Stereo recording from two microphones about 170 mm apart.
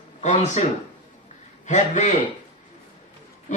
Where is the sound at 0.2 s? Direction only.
45° left (ahead or behind).